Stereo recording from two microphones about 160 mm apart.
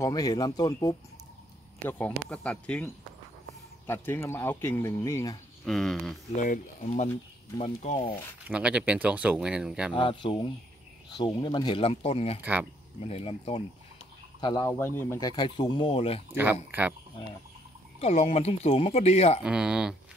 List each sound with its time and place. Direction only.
0.0 s speech: 25° left (ahead or behind)
1.9 s speech: 10° left (ahead or behind)
5.7 s speech: 5° left (ahead or behind)
6.3 s speech: 55° left (ahead or behind)
8.5 s speech: 5° right (ahead or behind)
9.9 s speech: 30° left (ahead or behind)
12.4 s speech: 10° right (ahead or behind)
13.0 s speech: 35° left (ahead or behind)
14.4 s speech: 20° left (ahead or behind); by 16.2 s 35° left (ahead or behind)
18.0 s speech: 45° left (ahead or behind)
19.4 s speech: 5° right (ahead or behind)